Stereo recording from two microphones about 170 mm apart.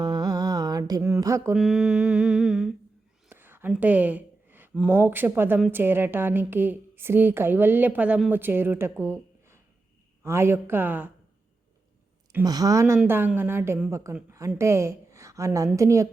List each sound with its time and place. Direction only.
0.0 s mantra: 25° right (ahead or behind)
1.5 s mantra: 5° right (ahead or behind)
3.2 s a woman's voice: 10° right (ahead or behind)
10.2 s a woman's voice: 15° right (ahead or behind)
12.5 s a woman's voice: 20° right (ahead or behind)